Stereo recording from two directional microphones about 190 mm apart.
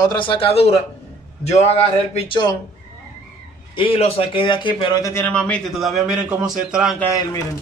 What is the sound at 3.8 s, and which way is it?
A man's voice, 30° left (ahead or behind).